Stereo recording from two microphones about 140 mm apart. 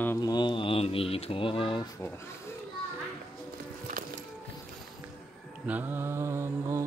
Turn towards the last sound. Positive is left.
turn(degrees=-20)  # may be behind; listen again after turning